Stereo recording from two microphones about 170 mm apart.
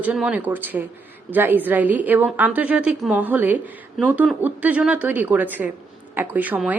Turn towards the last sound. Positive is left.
turn(degrees=-10)  # may be behind; listen again after turning